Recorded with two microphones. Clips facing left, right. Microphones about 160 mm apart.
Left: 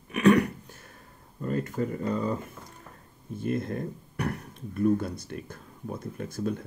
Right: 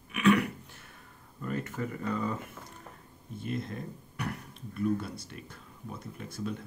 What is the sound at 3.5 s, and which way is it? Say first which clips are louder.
Speech: left 6 dB; 50° left (ahead or behind).